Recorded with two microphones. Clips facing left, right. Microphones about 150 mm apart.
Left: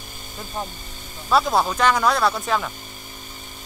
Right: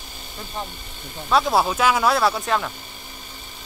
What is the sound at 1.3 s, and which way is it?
Speech, 5° right (ahead or behind).